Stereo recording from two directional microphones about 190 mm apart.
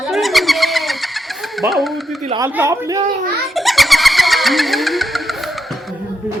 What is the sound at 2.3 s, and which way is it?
Speech, 15° right (ahead or behind).